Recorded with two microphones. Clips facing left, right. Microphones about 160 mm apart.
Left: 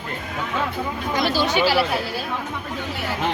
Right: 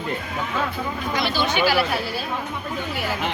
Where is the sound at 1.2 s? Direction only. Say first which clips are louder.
Left 2 dB; 40° left (ahead or behind).